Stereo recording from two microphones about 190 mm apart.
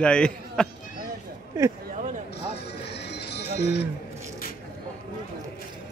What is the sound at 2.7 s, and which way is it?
Music, 60° left (ahead or behind).